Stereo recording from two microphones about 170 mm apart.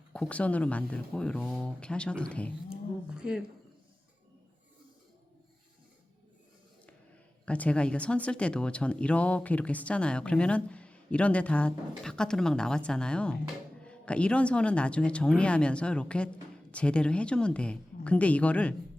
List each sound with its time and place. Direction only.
0.1 s speech: 5° left (ahead or behind)
2.6 s speech: 5° right (ahead or behind)
7.4 s speech: 5° left (ahead or behind)